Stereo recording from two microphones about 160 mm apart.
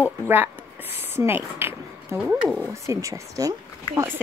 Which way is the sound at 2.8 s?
20° right (ahead or behind).